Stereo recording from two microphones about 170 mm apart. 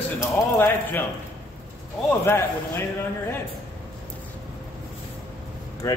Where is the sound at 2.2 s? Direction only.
15° left (ahead or behind).